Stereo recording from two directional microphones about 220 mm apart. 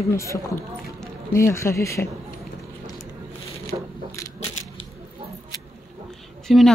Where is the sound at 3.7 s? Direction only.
20° right (ahead or behind).